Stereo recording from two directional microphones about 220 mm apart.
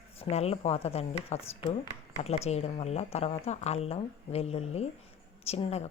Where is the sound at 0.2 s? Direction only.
30° left (ahead or behind).